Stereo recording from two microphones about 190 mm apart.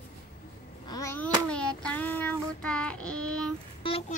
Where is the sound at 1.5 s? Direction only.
5° left (ahead or behind).